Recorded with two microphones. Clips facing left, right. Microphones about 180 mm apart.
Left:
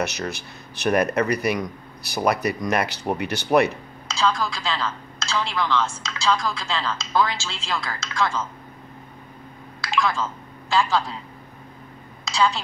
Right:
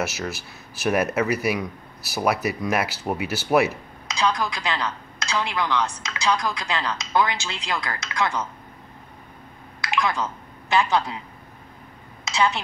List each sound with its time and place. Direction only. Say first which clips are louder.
0.0 s speech: left 1 dB; 5° right (ahead or behind)
4.1 s a woman's voice: left 1 dB; 15° right (ahead or behind)
9.8 s a sound: left 1 dB; 20° right (ahead or behind)
12.3 s a woman's voice: left 1 dB; 20° right (ahead or behind)